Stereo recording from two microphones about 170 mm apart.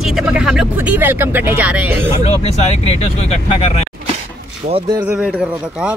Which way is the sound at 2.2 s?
35° left (ahead or behind).